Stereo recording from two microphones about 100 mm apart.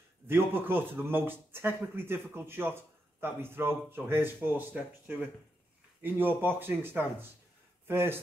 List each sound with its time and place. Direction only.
0.3 s speech: 20° right (ahead or behind)